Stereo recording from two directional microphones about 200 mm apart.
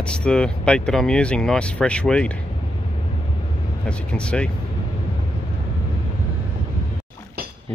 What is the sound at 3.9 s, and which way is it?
Speech, 5° left (ahead or behind).